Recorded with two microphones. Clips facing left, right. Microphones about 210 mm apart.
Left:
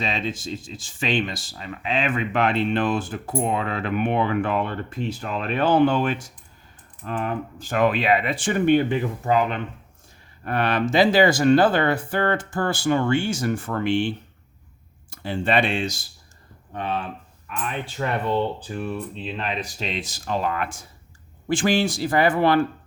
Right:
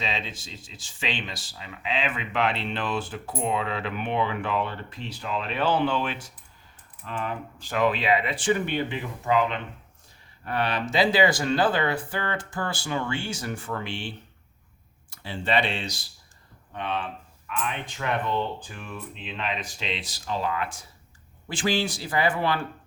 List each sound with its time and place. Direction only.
0.0 s speech: 50° left (ahead or behind)
15.1 s speech: 50° left (ahead or behind)